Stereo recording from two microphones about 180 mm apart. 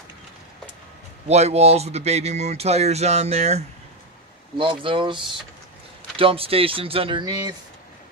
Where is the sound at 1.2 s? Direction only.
35° right (ahead or behind).